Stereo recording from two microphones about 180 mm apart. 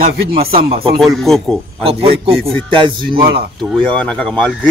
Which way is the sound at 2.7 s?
25° right (ahead or behind).